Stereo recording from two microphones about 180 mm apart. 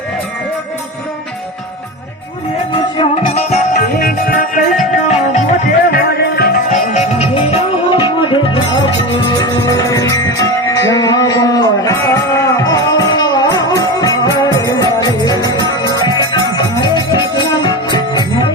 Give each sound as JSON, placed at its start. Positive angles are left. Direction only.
{"t": 2.7, "sound": "music", "side_deg": 30}
{"t": 3.8, "sound": "music", "side_deg": 55}
{"t": 5.0, "sound": "music", "side_deg": 40}
{"t": 5.9, "sound": "music", "side_deg": 60}
{"t": 6.7, "sound": "music", "side_deg": 40}